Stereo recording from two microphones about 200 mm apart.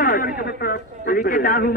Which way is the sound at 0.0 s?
45° left (ahead or behind).